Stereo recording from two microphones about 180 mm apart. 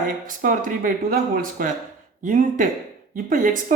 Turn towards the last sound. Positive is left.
turn(degrees=-50)  # may be behind; listen again after turning